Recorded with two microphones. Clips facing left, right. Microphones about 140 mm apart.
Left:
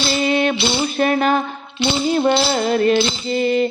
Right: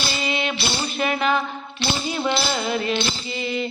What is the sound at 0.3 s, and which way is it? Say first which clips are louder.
Music: left 8 dB; 45° left (ahead or behind).